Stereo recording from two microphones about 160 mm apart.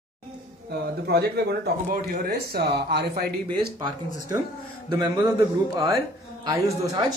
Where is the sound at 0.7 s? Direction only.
90° right.